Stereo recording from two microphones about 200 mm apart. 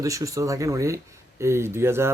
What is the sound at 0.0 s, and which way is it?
Speech, 15° right (ahead or behind).